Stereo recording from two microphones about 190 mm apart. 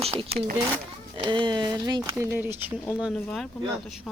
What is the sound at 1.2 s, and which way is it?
Speech, 25° right (ahead or behind).